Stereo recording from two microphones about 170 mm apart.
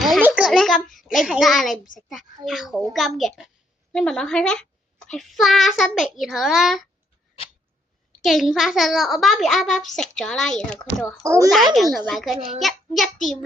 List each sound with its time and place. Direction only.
0.0 s a sound: 5° right (ahead or behind)
1.0 s a child's voice: centre (ahead or behind)
8.2 s a child's voice: centre (ahead or behind)
11.2 s a child's voice: 15° right (ahead or behind)
11.7 s a child's voice: centre (ahead or behind)